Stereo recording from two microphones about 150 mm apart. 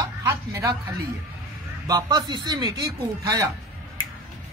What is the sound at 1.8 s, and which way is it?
Speech, 25° right (ahead or behind).